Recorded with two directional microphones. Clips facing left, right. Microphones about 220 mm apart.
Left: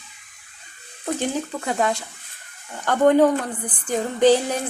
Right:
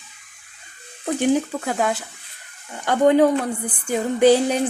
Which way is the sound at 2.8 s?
10° right (ahead or behind).